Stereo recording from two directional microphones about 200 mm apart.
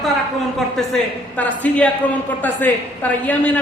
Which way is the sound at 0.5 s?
Centre (ahead or behind).